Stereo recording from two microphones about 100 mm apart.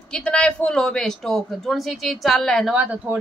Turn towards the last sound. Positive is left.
turn(degrees=-15)  # may be behind; listen again after turning